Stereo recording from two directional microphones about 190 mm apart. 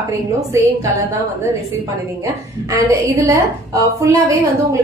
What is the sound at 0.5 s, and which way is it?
Speech, 15° right (ahead or behind).